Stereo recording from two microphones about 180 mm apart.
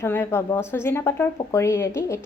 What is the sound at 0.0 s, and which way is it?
Speech, 15° left (ahead or behind).